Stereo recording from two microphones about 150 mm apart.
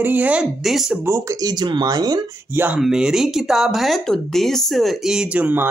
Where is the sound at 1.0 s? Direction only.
20° right (ahead or behind).